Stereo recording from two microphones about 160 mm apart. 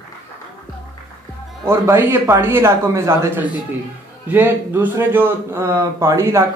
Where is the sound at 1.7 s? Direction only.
15° right (ahead or behind).